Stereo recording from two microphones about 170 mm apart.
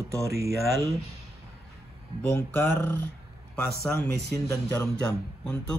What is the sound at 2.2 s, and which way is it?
Speech, 10° left (ahead or behind).